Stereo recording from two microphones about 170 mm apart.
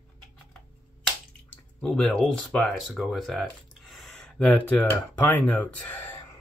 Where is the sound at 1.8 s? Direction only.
5° left (ahead or behind).